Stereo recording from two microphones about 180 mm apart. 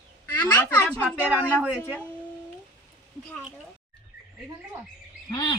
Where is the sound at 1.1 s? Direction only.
10° right (ahead or behind).